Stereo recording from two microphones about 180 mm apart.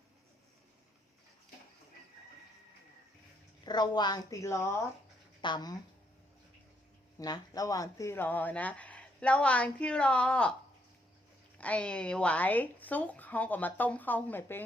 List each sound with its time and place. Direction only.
3.6 s a woman's voice: 25° left (ahead or behind)
7.2 s speech: 20° left (ahead or behind); by 10.5 s 5° left (ahead or behind)
11.5 s speech: 5° left (ahead or behind)